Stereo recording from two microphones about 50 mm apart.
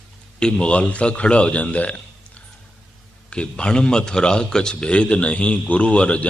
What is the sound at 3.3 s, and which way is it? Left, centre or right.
A man's voice, left.